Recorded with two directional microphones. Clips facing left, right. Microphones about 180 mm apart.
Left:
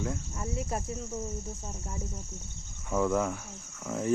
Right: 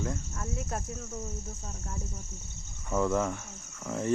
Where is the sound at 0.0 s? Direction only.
5° left (ahead or behind).